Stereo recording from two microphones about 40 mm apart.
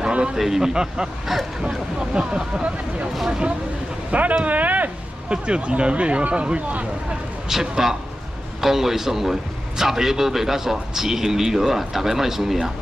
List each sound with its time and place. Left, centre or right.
0.0 s a sound: right
0.4 s a man's voice: centre
4.1 s speech: right
5.3 s speech: right
7.4 s a man's voice: centre